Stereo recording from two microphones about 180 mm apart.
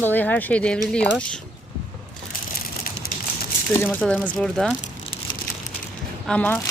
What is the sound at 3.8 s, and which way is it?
Speech, 10° left (ahead or behind).